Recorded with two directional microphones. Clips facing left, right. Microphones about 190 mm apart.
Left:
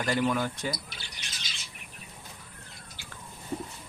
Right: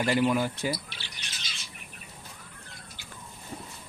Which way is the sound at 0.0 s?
10° right (ahead or behind).